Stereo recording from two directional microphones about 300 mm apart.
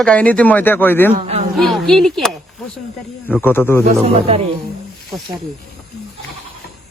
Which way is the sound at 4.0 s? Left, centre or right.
Centre.